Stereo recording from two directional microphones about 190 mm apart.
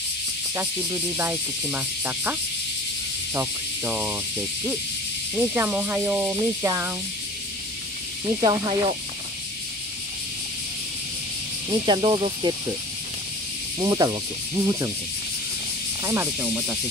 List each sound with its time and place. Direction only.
0.6 s music: 10° right (ahead or behind)
3.3 s music: 10° right (ahead or behind)
8.3 s sanding: 20° right (ahead or behind)
11.7 s sanding: 25° right (ahead or behind)
13.7 s sanding: 20° right (ahead or behind)
16.0 s music: 10° right (ahead or behind)